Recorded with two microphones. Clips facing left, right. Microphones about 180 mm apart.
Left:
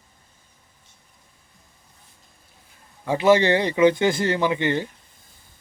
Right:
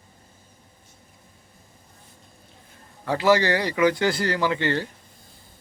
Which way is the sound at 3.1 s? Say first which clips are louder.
Left 3 dB; 20° left (ahead or behind).